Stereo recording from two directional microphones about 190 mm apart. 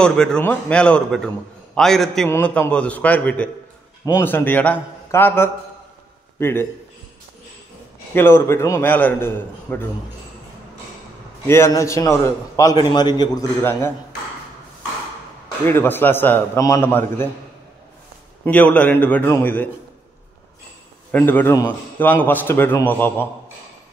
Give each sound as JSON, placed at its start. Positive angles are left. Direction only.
{"t": 0.0, "sound": "a man's voice", "side_deg": 5}
{"t": 8.1, "sound": "a man's voice", "side_deg": 10}
{"t": 11.4, "sound": "a man's voice", "side_deg": 15}
{"t": 15.6, "sound": "a man's voice", "side_deg": 10}
{"t": 18.4, "sound": "a man's voice", "side_deg": 10}
{"t": 21.1, "sound": "a man's voice", "side_deg": 10}